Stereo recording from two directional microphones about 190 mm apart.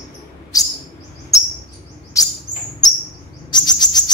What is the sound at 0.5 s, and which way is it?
Chirp, 20° left (ahead or behind).